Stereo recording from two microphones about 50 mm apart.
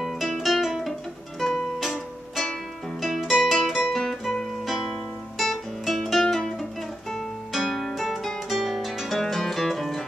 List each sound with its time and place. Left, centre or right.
0.0 s music: centre
3.9 s guitar: centre
4.6 s music: centre
5.4 s guitar: centre
6.2 s music: centre
7.1 s music: centre